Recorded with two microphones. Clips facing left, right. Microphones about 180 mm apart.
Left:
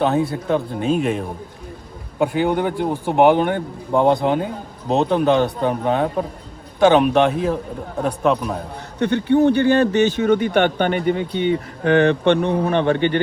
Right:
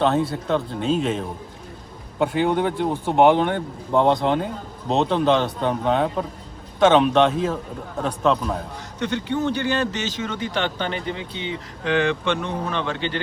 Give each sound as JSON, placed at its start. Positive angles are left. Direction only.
{"t": 0.0, "sound": "speech", "side_deg": 0}
{"t": 9.0, "sound": "speech", "side_deg": 55}